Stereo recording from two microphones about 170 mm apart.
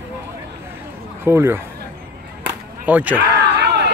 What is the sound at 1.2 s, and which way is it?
Speech, 15° right (ahead or behind).